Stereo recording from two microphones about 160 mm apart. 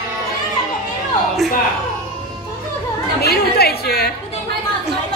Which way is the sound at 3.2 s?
80° left.